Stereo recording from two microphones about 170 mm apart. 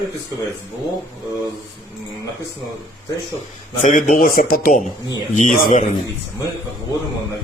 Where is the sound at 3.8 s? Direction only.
50° left (ahead or behind).